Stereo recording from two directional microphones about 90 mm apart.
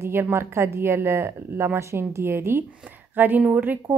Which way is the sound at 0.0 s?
25° right (ahead or behind).